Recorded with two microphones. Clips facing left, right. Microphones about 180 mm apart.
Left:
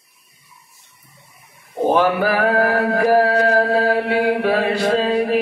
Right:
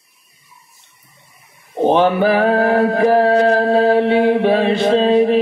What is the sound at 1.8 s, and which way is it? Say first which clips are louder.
Mantra: right 3 dB; 25° right (ahead or behind).